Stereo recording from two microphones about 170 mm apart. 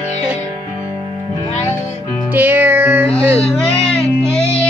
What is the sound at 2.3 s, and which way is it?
Music, 10° right (ahead or behind).